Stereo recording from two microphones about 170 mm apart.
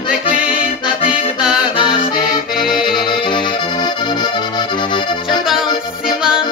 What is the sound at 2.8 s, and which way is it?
Accordion, 25° left (ahead or behind).